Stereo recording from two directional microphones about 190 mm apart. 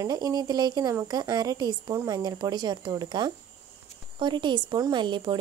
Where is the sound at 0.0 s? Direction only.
20° right (ahead or behind).